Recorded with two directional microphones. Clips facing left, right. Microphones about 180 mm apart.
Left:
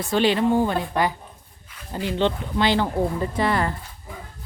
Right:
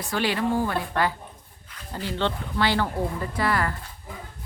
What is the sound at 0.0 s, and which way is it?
Speech, 25° left (ahead or behind).